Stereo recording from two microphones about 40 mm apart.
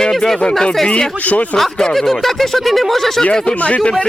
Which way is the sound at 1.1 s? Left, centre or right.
Left.